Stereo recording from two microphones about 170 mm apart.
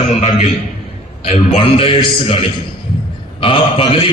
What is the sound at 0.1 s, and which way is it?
A man's voice, 40° left (ahead or behind).